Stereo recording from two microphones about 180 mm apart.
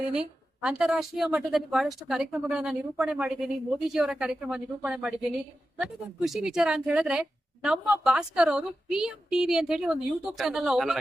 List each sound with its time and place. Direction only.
0.1 s a woman's voice: 5° right (ahead or behind)